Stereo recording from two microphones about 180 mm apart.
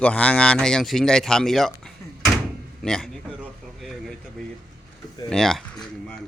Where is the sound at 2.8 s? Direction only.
5° left (ahead or behind).